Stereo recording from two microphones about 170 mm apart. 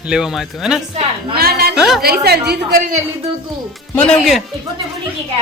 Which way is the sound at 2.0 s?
65° right (ahead or behind).